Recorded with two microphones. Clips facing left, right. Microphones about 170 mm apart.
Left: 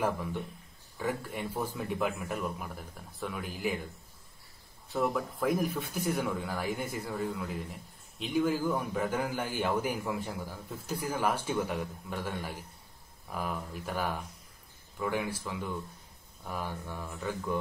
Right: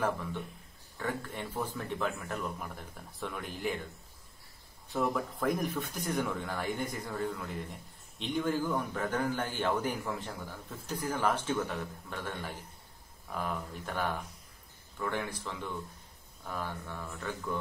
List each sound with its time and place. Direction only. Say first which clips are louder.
0.9 s a man's voice: left 2 dB; 10° left (ahead or behind)
4.8 s a man's voice: left 1 dB; centre (ahead or behind)